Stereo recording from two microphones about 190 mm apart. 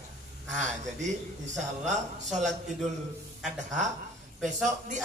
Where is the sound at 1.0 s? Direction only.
40° right (ahead or behind).